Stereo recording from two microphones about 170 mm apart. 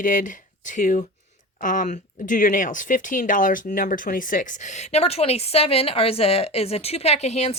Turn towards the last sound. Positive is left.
turn(degrees=40)  # may be behind; listen again after turning